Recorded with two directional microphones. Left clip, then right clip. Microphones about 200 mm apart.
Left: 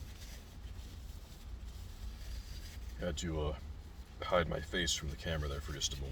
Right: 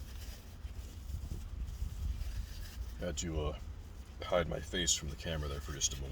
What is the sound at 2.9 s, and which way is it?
Speech, 10° right (ahead or behind).